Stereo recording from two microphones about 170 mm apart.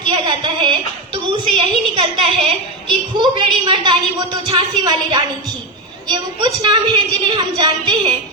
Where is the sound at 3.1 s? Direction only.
25° right (ahead or behind).